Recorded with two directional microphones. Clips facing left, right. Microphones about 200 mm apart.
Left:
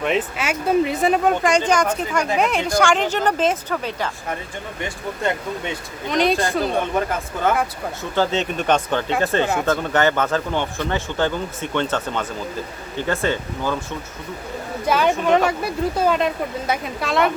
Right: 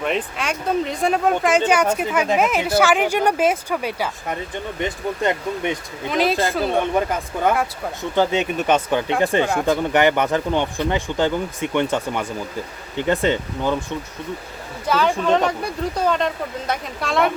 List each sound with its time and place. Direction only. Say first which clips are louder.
0.0 s speech: left 2 dB; 5° left (ahead or behind); by 5.7 s 15° right (ahead or behind)
6.1 s speech: even; 5° right (ahead or behind)
8.1 s speech: right 2 dB; 15° right (ahead or behind)
14.8 s speech: left 1 dB; 15° left (ahead or behind)